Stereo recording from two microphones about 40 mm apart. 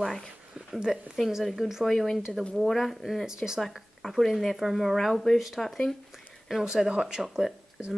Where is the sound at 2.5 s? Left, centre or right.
Centre.